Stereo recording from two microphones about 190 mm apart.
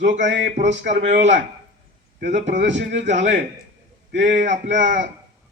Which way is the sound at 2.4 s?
70° right (ahead or behind).